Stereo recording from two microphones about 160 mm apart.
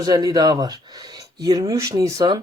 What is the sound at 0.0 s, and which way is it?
Speech, 25° right (ahead or behind).